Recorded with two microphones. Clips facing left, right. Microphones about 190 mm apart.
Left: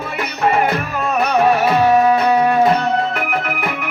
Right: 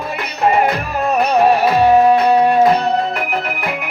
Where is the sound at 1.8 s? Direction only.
35° right (ahead or behind).